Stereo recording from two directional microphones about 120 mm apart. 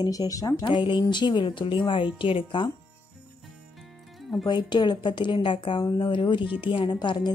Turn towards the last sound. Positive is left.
turn(degrees=40)  # may be behind; listen again after turning